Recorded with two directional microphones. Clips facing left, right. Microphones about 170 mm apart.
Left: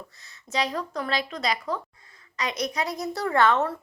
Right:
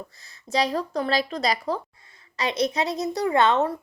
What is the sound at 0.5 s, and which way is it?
A woman's voice, 35° right (ahead or behind).